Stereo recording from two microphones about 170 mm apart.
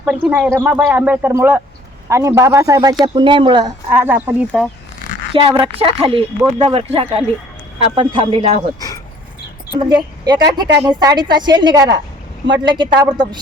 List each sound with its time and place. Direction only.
0.0 s a woman's voice: 10° right (ahead or behind); by 3.7 s 25° right (ahead or behind)
3.8 s speech: 15° right (ahead or behind)
5.3 s speech: 30° right (ahead or behind)
9.9 s a woman's voice: 25° right (ahead or behind)